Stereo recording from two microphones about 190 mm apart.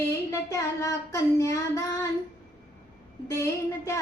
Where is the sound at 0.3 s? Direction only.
15° left (ahead or behind).